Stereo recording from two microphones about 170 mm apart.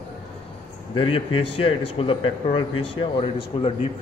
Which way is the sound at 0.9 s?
30° left (ahead or behind).